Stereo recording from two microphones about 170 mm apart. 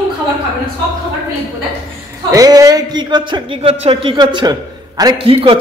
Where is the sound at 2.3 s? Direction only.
20° right (ahead or behind).